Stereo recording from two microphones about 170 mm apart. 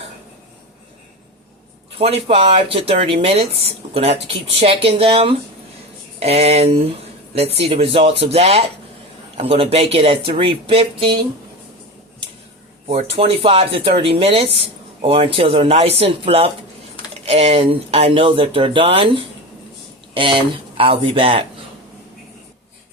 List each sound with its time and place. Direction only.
2.0 s speech: 35° right (ahead or behind)
12.9 s speech: 35° right (ahead or behind)